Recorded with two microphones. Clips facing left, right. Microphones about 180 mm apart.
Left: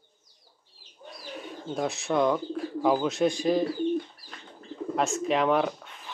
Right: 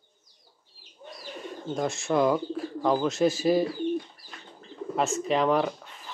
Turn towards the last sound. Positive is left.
turn(degrees=0)  # may be behind; listen again after turning